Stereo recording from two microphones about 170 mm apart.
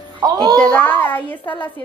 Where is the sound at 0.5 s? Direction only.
10° left (ahead or behind).